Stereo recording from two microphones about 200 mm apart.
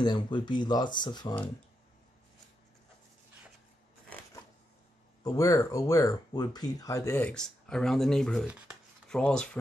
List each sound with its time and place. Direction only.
0.0 s speech: 20° left (ahead or behind)
5.2 s speech: 15° left (ahead or behind)